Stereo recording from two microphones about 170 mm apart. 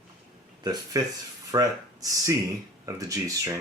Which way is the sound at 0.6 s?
25° right (ahead or behind).